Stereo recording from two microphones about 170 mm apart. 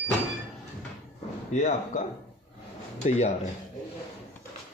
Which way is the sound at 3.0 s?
45° left (ahead or behind).